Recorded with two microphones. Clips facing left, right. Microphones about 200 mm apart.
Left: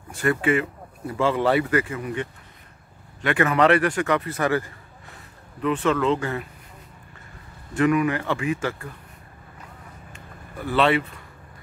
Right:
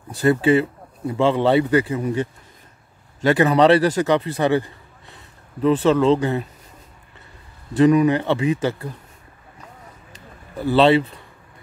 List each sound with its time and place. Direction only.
0.1 s speech: 30° right (ahead or behind)
7.7 s speech: 25° right (ahead or behind)
10.6 s speech: 30° right (ahead or behind)